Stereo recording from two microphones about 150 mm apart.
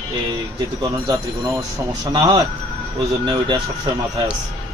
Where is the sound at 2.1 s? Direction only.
30° right (ahead or behind).